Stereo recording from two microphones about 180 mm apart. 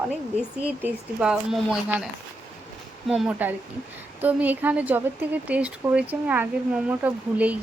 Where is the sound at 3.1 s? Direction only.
5° right (ahead or behind).